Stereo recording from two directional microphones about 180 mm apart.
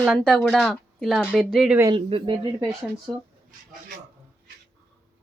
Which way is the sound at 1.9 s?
30° right (ahead or behind).